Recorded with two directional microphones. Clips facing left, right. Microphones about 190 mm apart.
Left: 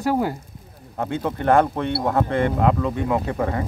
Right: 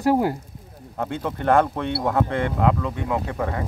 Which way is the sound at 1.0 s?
Centre (ahead or behind).